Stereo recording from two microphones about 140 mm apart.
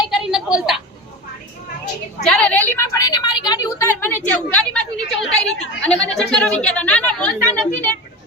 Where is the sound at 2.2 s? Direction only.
10° left (ahead or behind).